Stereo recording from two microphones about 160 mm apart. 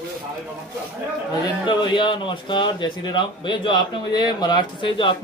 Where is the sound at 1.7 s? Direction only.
30° left (ahead or behind).